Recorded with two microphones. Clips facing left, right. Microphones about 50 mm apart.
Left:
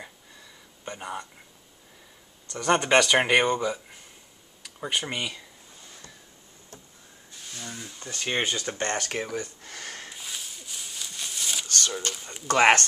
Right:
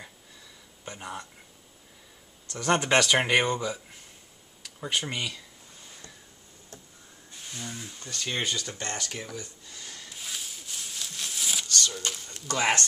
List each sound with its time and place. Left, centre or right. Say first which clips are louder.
0.8 s speech: left 3 dB; centre
2.4 s speech: left 2 dB; centre
7.5 s speech: even; centre
8.1 s speech: left 3 dB; left
10.1 s a sound: even; centre
11.6 s a sound: even; left
12.4 s speech: left 7 dB; left